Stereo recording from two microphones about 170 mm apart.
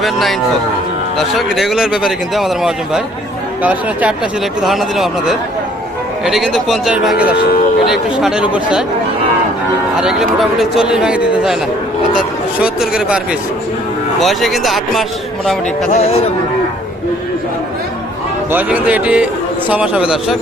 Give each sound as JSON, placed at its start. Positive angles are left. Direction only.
{"t": 0.0, "sound": "a man's voice", "side_deg": 0}
{"t": 1.4, "sound": "a man's voice", "side_deg": 0}
{"t": 10.0, "sound": "a man's voice", "side_deg": -5}
{"t": 14.2, "sound": "a man's voice", "side_deg": 0}
{"t": 15.9, "sound": "speech", "side_deg": 40}
{"t": 18.5, "sound": "a man's voice", "side_deg": -10}